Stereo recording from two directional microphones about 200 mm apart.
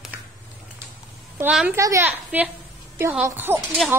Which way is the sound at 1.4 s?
5° right (ahead or behind).